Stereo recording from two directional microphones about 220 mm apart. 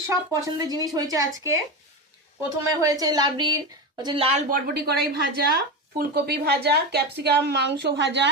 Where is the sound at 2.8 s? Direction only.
15° right (ahead or behind); by 5.0 s 45° right (ahead or behind).